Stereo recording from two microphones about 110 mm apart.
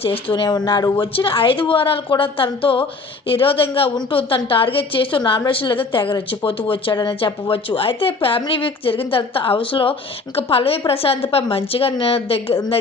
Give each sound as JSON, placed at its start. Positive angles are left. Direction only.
{"t": 0.0, "sound": "a woman's voice", "side_deg": 55}
{"t": 1.1, "sound": "a woman's voice", "side_deg": 55}